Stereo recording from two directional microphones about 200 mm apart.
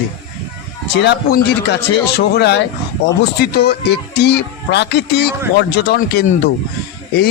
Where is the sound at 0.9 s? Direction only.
55° left (ahead or behind).